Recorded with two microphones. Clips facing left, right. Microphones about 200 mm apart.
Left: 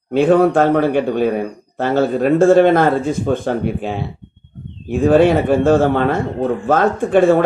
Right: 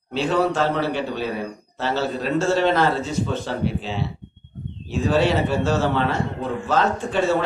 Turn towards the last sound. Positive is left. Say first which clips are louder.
# left 9 dB
turn(degrees=55)  # may be behind; listen again after turning